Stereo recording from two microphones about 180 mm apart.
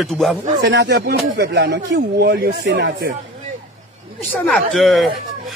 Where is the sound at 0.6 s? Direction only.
70° right (ahead or behind).